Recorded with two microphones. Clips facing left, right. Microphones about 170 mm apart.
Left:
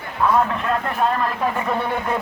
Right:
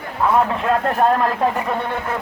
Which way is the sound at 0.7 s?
40° right (ahead or behind).